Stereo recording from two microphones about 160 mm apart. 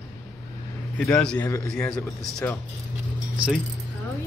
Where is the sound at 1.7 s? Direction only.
5° left (ahead or behind).